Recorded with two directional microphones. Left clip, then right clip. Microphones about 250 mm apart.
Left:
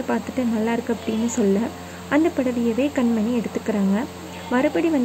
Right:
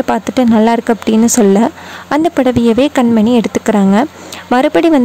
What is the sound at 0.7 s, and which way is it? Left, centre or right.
Speech, right.